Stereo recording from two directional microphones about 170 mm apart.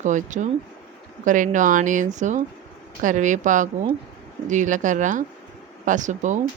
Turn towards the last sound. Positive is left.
turn(degrees=-45)  # may be behind; listen again after turning